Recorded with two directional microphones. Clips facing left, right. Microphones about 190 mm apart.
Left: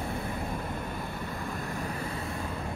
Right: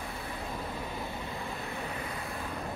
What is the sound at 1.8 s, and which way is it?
Vehicle, 35° left (ahead or behind).